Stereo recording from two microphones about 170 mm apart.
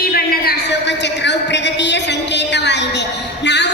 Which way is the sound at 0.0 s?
65° left (ahead or behind).